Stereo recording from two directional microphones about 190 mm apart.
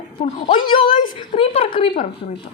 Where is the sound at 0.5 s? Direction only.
25° left (ahead or behind).